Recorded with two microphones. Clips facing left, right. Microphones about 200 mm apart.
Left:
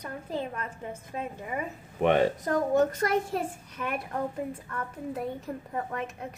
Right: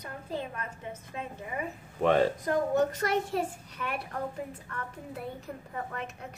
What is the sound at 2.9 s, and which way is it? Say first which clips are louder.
A child's voice: left 2 dB; 50° left (ahead or behind).